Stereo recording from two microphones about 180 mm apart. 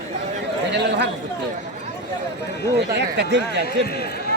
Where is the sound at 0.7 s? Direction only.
70° right (ahead or behind).